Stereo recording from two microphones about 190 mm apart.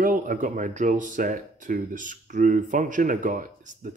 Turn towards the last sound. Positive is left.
turn(degrees=-45)  # may be behind; listen again after turning